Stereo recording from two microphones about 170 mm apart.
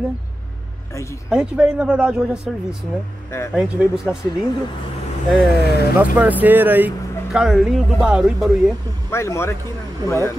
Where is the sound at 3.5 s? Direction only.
5° right (ahead or behind).